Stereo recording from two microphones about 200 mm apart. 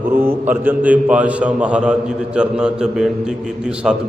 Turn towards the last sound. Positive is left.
turn(degrees=-5)  # may be behind; listen again after turning